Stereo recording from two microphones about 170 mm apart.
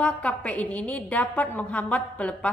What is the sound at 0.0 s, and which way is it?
A woman's voice, 5° left (ahead or behind).